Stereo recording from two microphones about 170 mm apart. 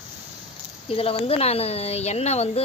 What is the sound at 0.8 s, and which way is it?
Speech, 35° left (ahead or behind).